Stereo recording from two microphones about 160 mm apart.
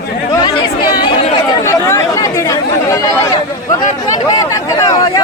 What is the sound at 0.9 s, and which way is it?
Chatter, 30° left (ahead or behind).